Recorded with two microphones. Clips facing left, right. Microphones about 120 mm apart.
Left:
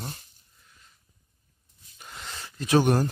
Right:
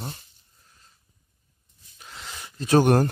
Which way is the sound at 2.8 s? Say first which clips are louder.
Right 4 dB; 60° right (ahead or behind).